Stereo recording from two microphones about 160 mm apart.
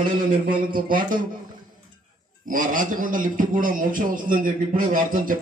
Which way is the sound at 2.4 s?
55° right (ahead or behind).